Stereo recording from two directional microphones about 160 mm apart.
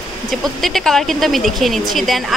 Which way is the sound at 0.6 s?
Centre (ahead or behind).